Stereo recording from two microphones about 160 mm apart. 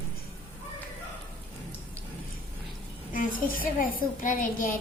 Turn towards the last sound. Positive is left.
turn(degrees=55)  # may be behind; listen again after turning